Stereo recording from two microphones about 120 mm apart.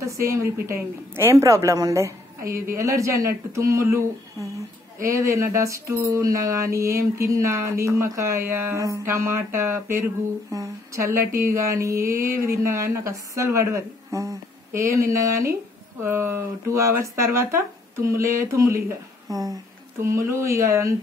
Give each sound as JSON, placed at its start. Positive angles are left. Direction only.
{"t": 0.0, "sound": "mantra", "side_deg": -25}